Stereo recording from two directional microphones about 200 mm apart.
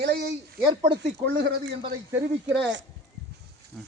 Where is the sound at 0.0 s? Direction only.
50° right (ahead or behind).